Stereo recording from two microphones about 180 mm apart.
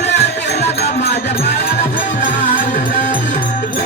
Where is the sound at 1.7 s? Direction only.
50° left (ahead or behind).